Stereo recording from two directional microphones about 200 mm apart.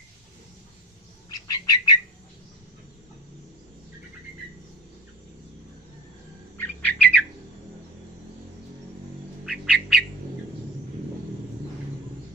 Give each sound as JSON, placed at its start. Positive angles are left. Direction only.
{"t": 1.3, "sound": "bird", "side_deg": 20}
{"t": 6.6, "sound": "bird", "side_deg": 5}
{"t": 9.5, "sound": "bird", "side_deg": 0}